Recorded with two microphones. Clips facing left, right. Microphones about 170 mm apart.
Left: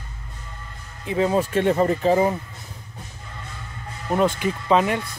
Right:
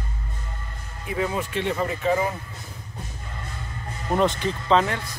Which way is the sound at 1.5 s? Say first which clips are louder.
Left 6 dB; 45° left (ahead or behind).